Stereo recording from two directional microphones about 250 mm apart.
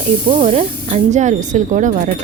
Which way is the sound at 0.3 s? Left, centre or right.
Right.